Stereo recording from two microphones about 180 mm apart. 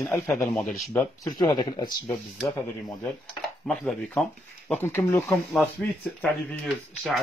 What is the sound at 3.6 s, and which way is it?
Speech, 5° left (ahead or behind).